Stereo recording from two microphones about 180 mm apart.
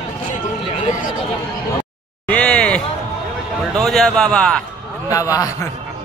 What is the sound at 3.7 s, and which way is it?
Speech, centre (ahead or behind).